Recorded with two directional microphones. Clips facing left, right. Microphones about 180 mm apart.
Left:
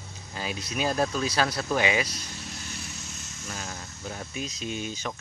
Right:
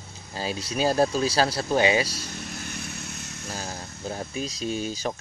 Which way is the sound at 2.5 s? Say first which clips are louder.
Right 4 dB; 60° right (ahead or behind).